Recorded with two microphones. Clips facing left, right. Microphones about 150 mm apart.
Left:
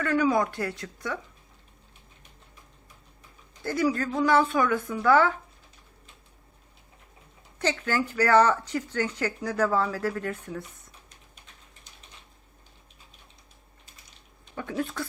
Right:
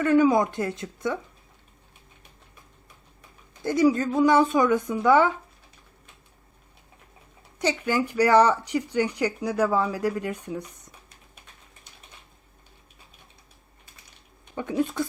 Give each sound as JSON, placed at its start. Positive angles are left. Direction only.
{"t": 0.0, "sound": "speech", "side_deg": -20}
{"t": 3.6, "sound": "speech", "side_deg": -20}
{"t": 7.6, "sound": "speech", "side_deg": -15}
{"t": 14.5, "sound": "speech", "side_deg": -15}